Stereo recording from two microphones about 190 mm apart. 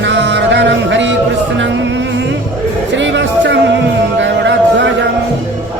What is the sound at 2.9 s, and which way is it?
Music, 70° right (ahead or behind).